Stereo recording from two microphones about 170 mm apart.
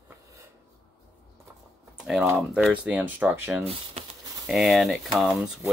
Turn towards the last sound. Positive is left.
turn(degrees=0)  # may be behind; listen again after turning